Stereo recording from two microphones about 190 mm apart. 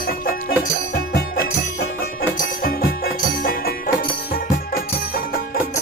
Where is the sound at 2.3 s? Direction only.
50° left (ahead or behind).